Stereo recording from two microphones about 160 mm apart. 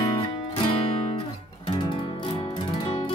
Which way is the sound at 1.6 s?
30° left (ahead or behind).